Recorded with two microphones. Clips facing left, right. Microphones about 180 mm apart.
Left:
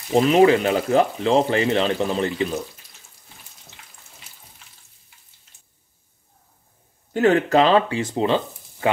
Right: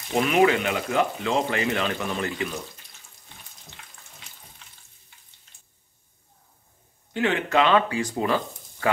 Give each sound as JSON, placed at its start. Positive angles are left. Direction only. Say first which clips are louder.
{"t": 0.1, "sound": "speech", "louder": "left 5 dB", "side_deg": 30}
{"t": 7.2, "sound": "speech", "louder": "left 6 dB", "side_deg": 40}